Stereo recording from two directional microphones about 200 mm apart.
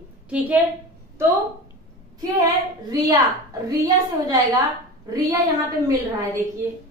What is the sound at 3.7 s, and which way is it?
Speech, 20° right (ahead or behind).